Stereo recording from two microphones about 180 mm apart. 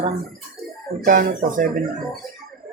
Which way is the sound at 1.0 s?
50° right (ahead or behind).